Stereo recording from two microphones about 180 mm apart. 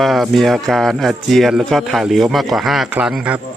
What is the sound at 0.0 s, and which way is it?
A man's voice, centre (ahead or behind).